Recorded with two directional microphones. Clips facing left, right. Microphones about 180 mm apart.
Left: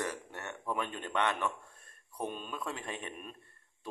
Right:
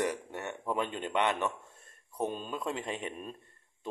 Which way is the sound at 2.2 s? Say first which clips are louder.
Right 4 dB; 30° right (ahead or behind).